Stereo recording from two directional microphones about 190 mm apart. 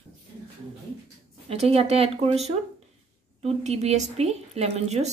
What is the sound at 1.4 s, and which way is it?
A woman's voice, 30° right (ahead or behind).